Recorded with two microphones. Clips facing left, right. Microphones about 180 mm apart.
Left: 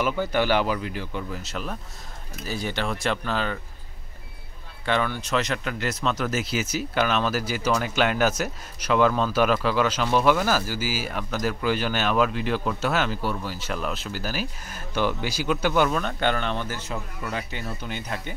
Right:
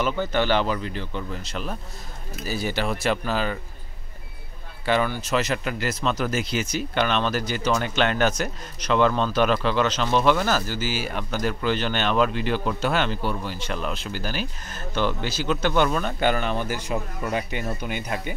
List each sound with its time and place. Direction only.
0.0 s speech: 10° left (ahead or behind)
4.8 s speech: 5° right (ahead or behind)